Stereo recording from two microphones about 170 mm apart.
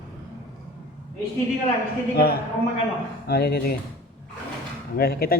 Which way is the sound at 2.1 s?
65° left (ahead or behind).